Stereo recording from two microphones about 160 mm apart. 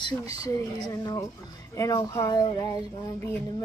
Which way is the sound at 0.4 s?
25° left (ahead or behind).